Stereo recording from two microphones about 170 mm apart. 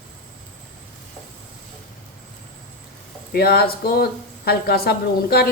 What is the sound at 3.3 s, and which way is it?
A woman's voice, 65° left (ahead or behind).